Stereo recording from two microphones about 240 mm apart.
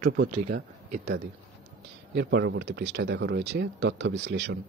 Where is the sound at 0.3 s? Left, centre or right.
Right.